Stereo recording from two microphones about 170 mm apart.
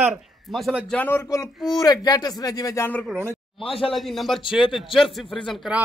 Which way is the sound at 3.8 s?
Centre (ahead or behind).